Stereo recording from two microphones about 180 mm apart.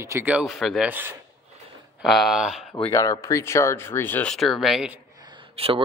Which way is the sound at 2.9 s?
15° left (ahead or behind).